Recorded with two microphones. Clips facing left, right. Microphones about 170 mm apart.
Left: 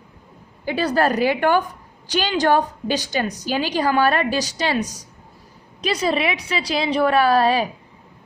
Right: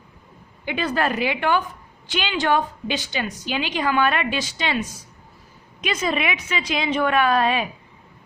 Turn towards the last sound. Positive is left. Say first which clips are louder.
# left 3 dB
turn(degrees=35)  # may be behind; listen again after turning